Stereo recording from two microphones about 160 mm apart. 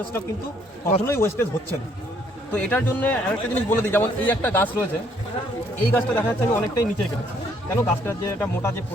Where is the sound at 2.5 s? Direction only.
10° left (ahead or behind).